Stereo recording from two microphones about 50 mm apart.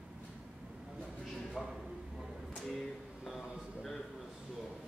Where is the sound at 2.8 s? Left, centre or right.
Centre.